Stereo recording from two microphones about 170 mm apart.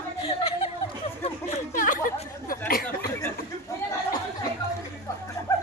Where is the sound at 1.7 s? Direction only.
50° left (ahead or behind).